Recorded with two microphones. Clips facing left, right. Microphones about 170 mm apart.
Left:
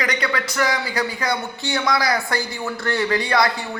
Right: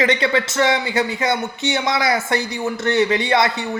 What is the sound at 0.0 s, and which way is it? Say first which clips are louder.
A man's voice: right 6 dB; 25° right (ahead or behind).